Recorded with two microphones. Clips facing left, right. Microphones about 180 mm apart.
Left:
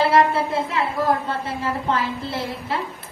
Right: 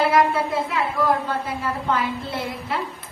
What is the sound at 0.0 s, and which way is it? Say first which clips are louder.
A woman's voice: left 1 dB; 25° left (ahead or behind).